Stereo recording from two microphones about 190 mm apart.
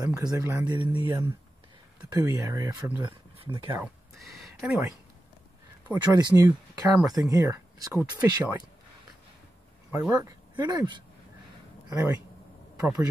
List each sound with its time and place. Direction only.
0.0 s speech: 20° right (ahead or behind)
1.0 s speech: 25° right (ahead or behind)
3.7 s a sound: 5° right (ahead or behind)
5.9 s speech: 20° right (ahead or behind)
9.8 s speech: 10° right (ahead or behind)